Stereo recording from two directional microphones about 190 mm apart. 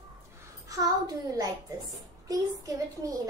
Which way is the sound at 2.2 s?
15° right (ahead or behind).